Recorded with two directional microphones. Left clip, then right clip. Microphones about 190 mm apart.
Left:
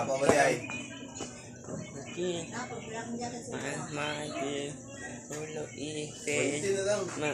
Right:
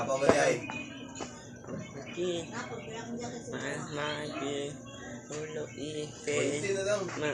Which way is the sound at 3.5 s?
15° right (ahead or behind).